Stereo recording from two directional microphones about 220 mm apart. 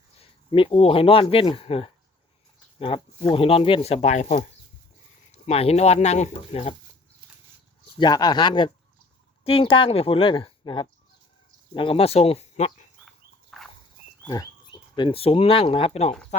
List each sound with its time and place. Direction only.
0.2 s speech: 25° left (ahead or behind)
7.9 s speech: 20° left (ahead or behind)
13.1 s dog: centre (ahead or behind)
14.2 s dog: 15° left (ahead or behind)
14.9 s speech: 25° left (ahead or behind)